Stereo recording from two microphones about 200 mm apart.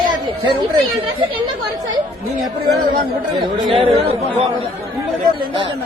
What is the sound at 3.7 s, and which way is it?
Speech, 30° right (ahead or behind).